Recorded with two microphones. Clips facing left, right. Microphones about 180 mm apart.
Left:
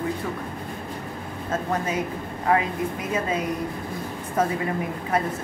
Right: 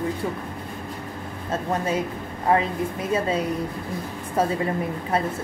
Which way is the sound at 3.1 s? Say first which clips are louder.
Right 4 dB; 30° right (ahead or behind).